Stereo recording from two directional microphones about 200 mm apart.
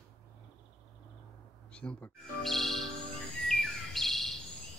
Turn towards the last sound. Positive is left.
turn(degrees=0)  # may be behind; listen again after turning